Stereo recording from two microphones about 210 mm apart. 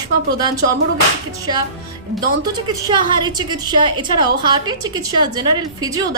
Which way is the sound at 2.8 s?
20° right (ahead or behind).